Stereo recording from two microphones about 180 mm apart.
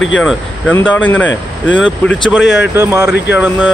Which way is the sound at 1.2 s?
90° left.